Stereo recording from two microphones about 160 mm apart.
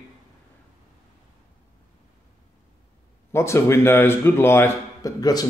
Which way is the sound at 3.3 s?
15° left (ahead or behind).